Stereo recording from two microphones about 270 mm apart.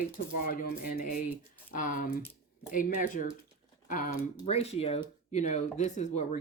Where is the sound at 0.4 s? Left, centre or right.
Left.